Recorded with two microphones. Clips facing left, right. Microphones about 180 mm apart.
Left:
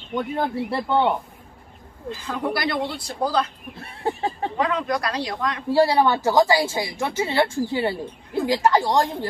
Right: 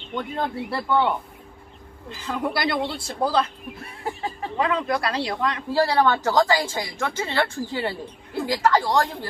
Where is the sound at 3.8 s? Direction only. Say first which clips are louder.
Left 5 dB; 30° left (ahead or behind).